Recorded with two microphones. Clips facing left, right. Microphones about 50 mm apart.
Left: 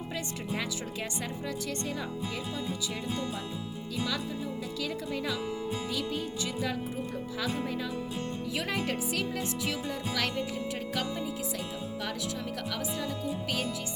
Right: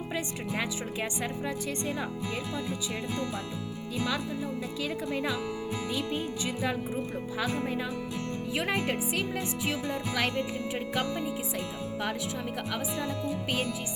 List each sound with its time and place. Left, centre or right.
0.1 s speech: right
3.9 s speech: right
12.7 s speech: right